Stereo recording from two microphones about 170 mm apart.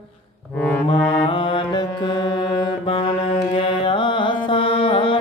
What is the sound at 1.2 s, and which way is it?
Music, 30° left (ahead or behind).